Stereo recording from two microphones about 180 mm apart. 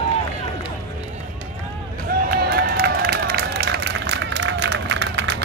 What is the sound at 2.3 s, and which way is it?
Run, 60° right (ahead or behind).